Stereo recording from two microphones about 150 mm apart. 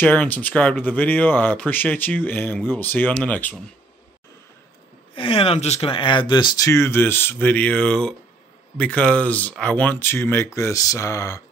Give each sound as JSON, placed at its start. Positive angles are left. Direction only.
{"t": 0.0, "sound": "speech", "side_deg": 10}
{"t": 5.1, "sound": "speech", "side_deg": 35}